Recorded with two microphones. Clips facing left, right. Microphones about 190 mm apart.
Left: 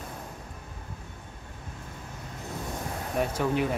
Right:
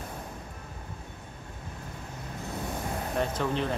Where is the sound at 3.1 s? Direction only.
10° left (ahead or behind).